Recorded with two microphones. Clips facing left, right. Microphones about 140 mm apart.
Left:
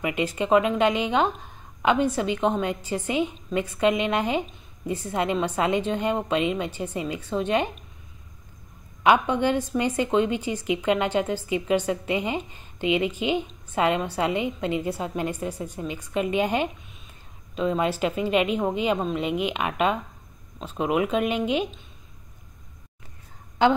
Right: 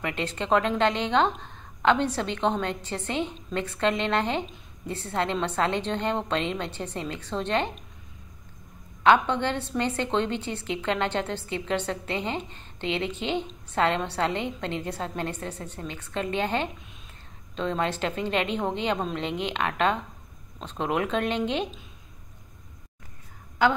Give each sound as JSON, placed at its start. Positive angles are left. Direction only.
{"t": 0.0, "sound": "a woman's voice", "side_deg": 10}
{"t": 9.0, "sound": "a woman's voice", "side_deg": 10}
{"t": 23.6, "sound": "a woman's voice", "side_deg": 20}